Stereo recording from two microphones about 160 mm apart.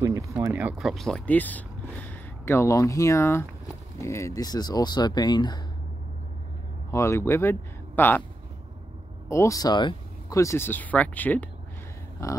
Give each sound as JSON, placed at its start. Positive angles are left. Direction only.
{"t": 0.0, "sound": "speech", "side_deg": -20}
{"t": 6.9, "sound": "speech", "side_deg": 15}
{"t": 9.3, "sound": "speech", "side_deg": 20}